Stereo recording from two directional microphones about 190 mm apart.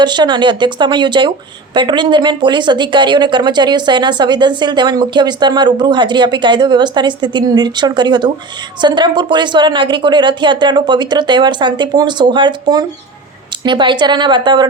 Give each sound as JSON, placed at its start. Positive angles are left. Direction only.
{"t": 0.0, "sound": "speech", "side_deg": -25}